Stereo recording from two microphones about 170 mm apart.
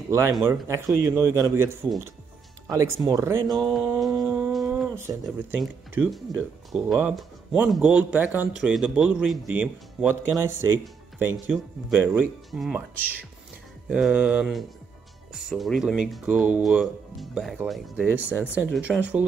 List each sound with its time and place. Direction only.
0.1 s speech: 15° right (ahead or behind)
3.1 s speech: 15° right (ahead or behind)
3.4 s a sound: centre (ahead or behind)
4.9 s speech: 15° right (ahead or behind)
5.6 s speech: centre (ahead or behind)